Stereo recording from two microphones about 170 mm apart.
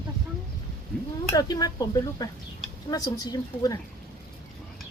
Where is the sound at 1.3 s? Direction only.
20° left (ahead or behind).